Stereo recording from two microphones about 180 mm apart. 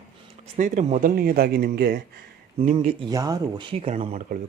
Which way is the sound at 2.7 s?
25° right (ahead or behind).